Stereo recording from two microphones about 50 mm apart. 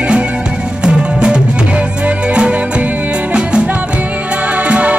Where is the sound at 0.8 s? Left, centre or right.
Centre.